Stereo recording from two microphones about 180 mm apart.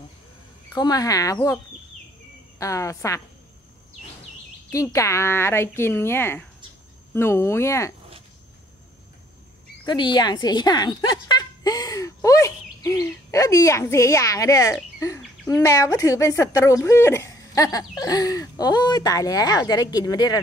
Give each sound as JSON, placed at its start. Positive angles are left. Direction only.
{"t": 0.7, "sound": "speech", "side_deg": 20}
{"t": 2.6, "sound": "speech", "side_deg": 15}
{"t": 4.6, "sound": "speech", "side_deg": 15}
{"t": 9.8, "sound": "a woman's voice", "side_deg": 25}